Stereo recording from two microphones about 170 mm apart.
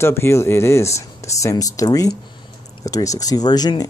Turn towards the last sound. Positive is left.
turn(degrees=25)  # may be behind; listen again after turning